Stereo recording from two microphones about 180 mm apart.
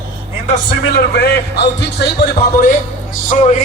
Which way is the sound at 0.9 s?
60° left (ahead or behind).